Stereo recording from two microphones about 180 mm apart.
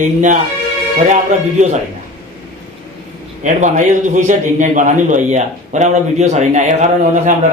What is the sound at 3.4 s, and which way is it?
A man's voice, 40° right (ahead or behind).